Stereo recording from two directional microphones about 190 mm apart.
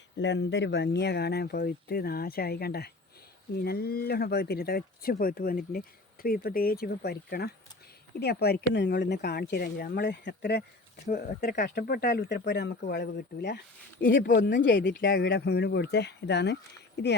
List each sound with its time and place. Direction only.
0.2 s speech: 70° left (ahead or behind)
15.0 s speech: 55° left (ahead or behind)